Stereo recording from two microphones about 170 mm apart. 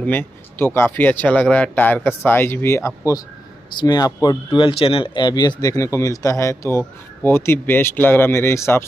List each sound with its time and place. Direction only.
0.0 s speech: 10° left (ahead or behind)